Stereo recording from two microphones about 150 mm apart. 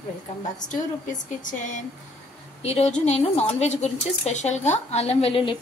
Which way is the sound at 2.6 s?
45° left (ahead or behind).